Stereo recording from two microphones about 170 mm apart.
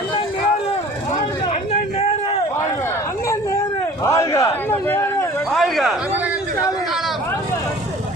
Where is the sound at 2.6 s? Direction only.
15° left (ahead or behind).